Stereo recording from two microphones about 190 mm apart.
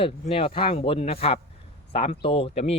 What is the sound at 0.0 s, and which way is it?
Speech, 30° left (ahead or behind).